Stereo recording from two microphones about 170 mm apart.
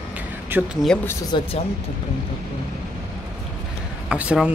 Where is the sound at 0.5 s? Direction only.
10° right (ahead or behind).